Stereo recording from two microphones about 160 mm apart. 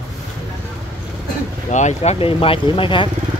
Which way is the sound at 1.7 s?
45° left (ahead or behind).